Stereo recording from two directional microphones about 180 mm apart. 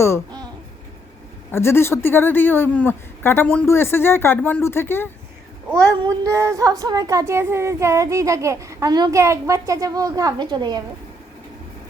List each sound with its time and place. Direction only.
0.3 s babbling: 20° right (ahead or behind)
1.5 s speech: 15° left (ahead or behind)
6.0 s speech: 20° right (ahead or behind)